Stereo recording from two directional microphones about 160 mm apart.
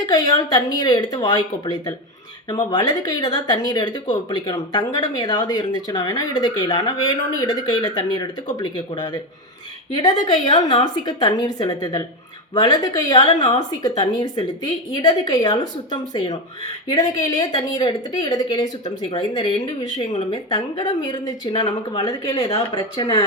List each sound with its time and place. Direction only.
0.0 s speech: 30° left (ahead or behind)
10.5 s speech: 25° left (ahead or behind)
16.9 s speech: 20° left (ahead or behind)